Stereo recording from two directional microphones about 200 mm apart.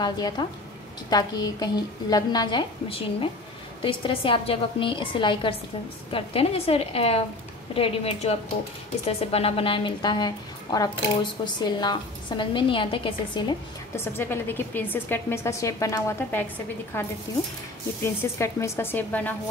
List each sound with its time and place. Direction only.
0.0 s a woman's voice: 20° left (ahead or behind)
14.1 s a woman's voice: 10° left (ahead or behind)